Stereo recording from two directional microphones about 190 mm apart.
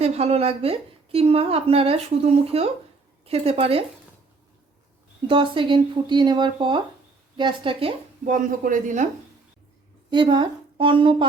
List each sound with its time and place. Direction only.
0.0 s a woman's voice: 35° right (ahead or behind)
5.3 s a woman's voice: 25° right (ahead or behind)
10.1 s a woman's voice: 25° right (ahead or behind)